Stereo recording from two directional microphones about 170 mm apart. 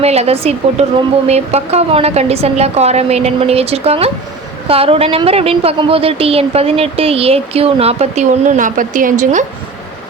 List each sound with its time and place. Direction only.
0.0 s a woman's voice: 35° right (ahead or behind)